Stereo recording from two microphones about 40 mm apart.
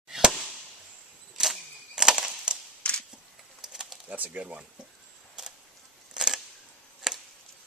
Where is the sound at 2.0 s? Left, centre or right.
Centre.